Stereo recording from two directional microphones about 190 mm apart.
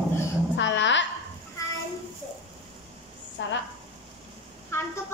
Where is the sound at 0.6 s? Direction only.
70° left (ahead or behind).